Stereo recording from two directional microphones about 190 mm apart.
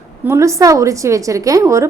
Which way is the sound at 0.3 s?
15° right (ahead or behind).